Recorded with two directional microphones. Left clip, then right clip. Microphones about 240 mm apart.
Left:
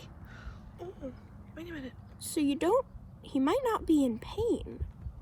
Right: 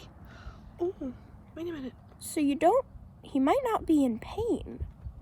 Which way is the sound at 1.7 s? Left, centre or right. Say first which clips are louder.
Right 4 dB; centre.